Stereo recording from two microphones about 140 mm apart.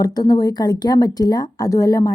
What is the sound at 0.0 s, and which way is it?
A woman's voice, 30° left (ahead or behind).